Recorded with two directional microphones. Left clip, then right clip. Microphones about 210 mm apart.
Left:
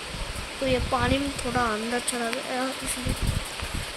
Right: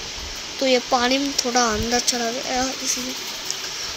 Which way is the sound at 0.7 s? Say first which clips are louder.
Right 6 dB; 15° right (ahead or behind).